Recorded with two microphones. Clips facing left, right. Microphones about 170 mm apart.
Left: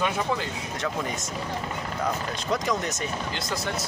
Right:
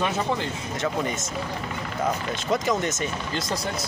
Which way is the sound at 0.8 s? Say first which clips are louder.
Right 4 dB; centre (ahead or behind).